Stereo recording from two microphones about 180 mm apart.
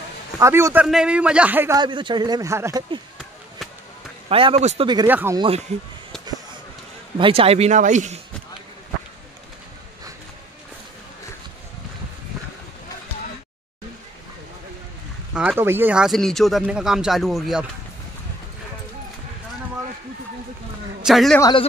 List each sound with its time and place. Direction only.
0.4 s a man's voice: 15° right (ahead or behind)
1.8 s speech: 25° right (ahead or behind)
4.3 s speech: 30° right (ahead or behind)
5.0 s a man's voice: 10° right (ahead or behind)
7.2 s speech: 30° right (ahead or behind)
15.3 s speech: 10° right (ahead or behind)
21.0 s a man's voice: centre (ahead or behind)
21.4 s speech: 25° left (ahead or behind)